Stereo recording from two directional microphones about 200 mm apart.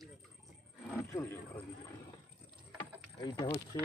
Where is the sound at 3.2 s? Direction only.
20° left (ahead or behind).